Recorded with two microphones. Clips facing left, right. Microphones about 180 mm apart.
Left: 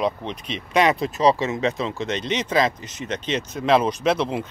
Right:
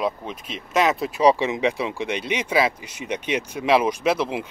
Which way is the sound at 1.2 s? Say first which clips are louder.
Right 2 dB; 15° right (ahead or behind).